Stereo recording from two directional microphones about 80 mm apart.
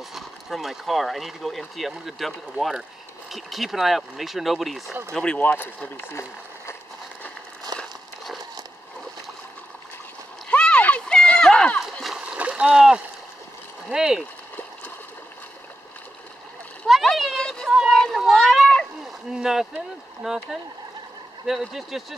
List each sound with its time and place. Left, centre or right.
0.1 s speech: centre
5.1 s speech: centre
5.9 s speech: left
7.7 s crumpling: right
10.5 s a sound: centre
11.8 s splash: centre
12.2 s splash: centre
13.8 s speech: centre
16.8 s a sound: centre
17.6 s a sound: centre
17.9 s a sound: centre
19.3 s speech: centre
21.5 s speech: centre